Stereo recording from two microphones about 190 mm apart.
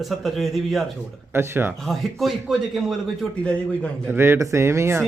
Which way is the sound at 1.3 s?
10° right (ahead or behind).